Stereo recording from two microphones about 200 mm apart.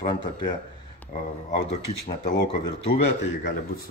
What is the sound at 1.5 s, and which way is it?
Speech, 45° left (ahead or behind).